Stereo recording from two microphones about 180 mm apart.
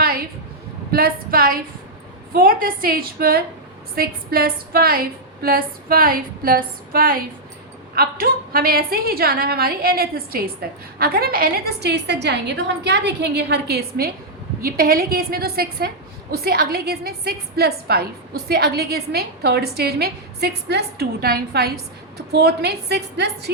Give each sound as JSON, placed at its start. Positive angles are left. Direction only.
{"t": 0.9, "sound": "a woman's voice", "side_deg": -55}